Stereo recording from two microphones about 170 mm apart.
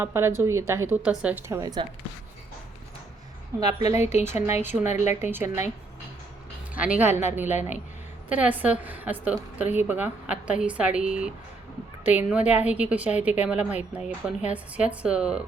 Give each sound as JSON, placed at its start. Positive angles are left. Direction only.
{"t": 0.0, "sound": "a woman's voice", "side_deg": -15}
{"t": 3.6, "sound": "a woman's voice", "side_deg": -20}
{"t": 3.8, "sound": "a woman's voice", "side_deg": 40}
{"t": 4.6, "sound": "a woman's voice", "side_deg": -15}
{"t": 6.7, "sound": "a woman's voice", "side_deg": -5}
{"t": 7.4, "sound": "speech", "side_deg": 45}
{"t": 8.3, "sound": "a woman's voice", "side_deg": -10}